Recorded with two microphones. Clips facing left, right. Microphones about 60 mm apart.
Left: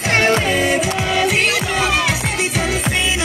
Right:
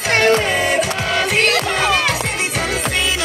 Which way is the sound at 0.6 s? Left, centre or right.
Centre.